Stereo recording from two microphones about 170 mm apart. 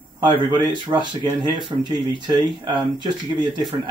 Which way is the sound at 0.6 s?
25° right (ahead or behind).